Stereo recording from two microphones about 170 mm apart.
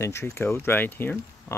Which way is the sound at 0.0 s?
15° left (ahead or behind).